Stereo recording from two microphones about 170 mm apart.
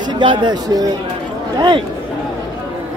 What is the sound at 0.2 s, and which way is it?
Speech, 30° right (ahead or behind).